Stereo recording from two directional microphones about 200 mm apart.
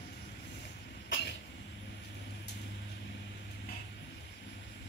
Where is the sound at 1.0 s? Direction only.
60° left (ahead or behind).